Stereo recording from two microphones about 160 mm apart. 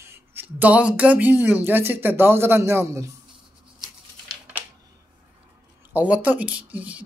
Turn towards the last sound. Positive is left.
turn(degrees=-10)  # may be behind; listen again after turning